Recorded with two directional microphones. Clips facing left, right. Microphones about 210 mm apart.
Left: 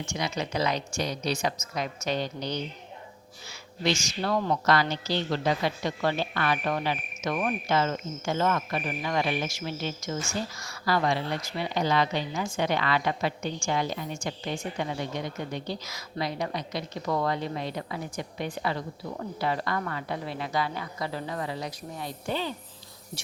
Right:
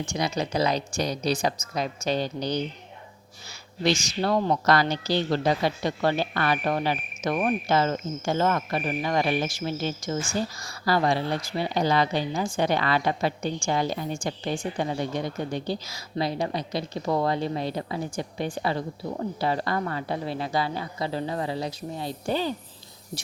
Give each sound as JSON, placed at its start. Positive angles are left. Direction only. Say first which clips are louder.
{"t": 0.0, "sound": "speech", "louder": "right 4 dB", "side_deg": -35}
{"t": 3.8, "sound": "speech", "louder": "right 3 dB", "side_deg": -35}